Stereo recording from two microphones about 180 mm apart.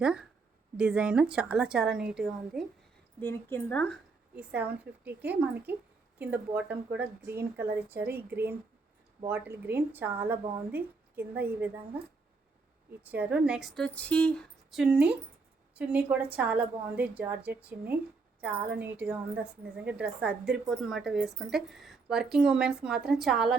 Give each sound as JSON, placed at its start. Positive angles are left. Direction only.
{"t": 0.0, "sound": "a woman's voice", "side_deg": -5}
{"t": 3.2, "sound": "a woman's voice", "side_deg": 10}
{"t": 4.4, "sound": "speech", "side_deg": -10}
{"t": 13.0, "sound": "a woman's voice", "side_deg": -10}